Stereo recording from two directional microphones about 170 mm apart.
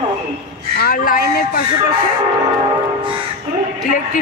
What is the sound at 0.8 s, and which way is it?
Speech, 55° left (ahead or behind).